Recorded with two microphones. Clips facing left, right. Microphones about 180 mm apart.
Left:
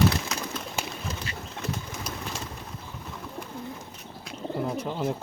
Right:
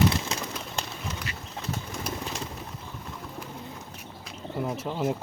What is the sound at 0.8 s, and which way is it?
Bird, 5° left (ahead or behind).